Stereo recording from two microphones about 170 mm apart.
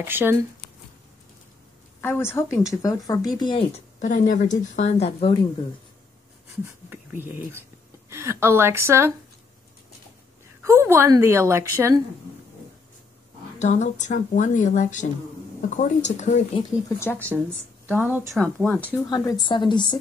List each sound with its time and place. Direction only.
0.0 s a woman's voice: 10° right (ahead or behind)
2.0 s speech: 15° left (ahead or behind)
3.7 s speech: 45° left (ahead or behind)
6.9 s a woman's voice: 10° right (ahead or behind)
10.6 s a woman's voice: 15° right (ahead or behind)
13.6 s speech: 45° left (ahead or behind)
17.0 s speech: 10° left (ahead or behind)
17.8 s a woman's voice: 10° right (ahead or behind)
18.3 s speech: 5° left (ahead or behind)
19.0 s speech: 25° left (ahead or behind)